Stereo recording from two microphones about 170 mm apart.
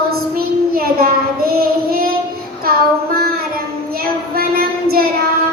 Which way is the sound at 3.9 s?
60° right (ahead or behind).